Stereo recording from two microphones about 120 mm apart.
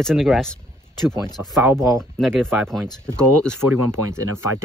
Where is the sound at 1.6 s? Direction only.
20° right (ahead or behind).